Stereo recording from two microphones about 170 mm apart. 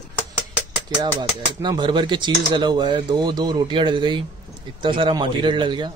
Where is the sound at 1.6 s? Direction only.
25° right (ahead or behind).